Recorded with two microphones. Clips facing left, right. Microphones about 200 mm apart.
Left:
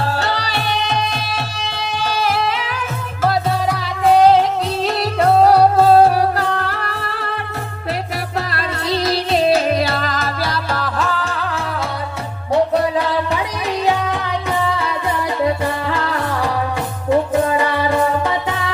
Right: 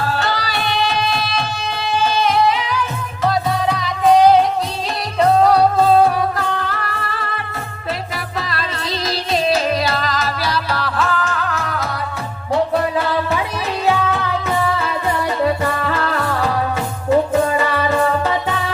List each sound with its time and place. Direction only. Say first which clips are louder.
6.1 s music: left 2 dB; 65° left (ahead or behind)
8.4 s music: left 1 dB; 65° left (ahead or behind)
10.9 s music: right 1 dB; 35° left (ahead or behind)
13.8 s music: right 2 dB; 15° left (ahead or behind)
15.4 s music: even; 15° left (ahead or behind)
17.3 s music: even; 15° left (ahead or behind)